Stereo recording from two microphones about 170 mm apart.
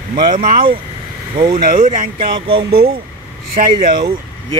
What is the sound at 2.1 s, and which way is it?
Speech, 30° right (ahead or behind).